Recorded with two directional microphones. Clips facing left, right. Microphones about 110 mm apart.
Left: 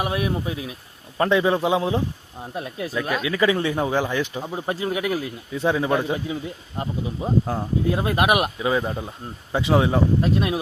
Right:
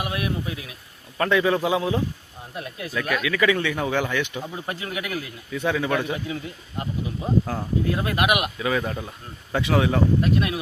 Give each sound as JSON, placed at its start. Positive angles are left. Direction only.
{"t": 0.0, "sound": "speech", "side_deg": 30}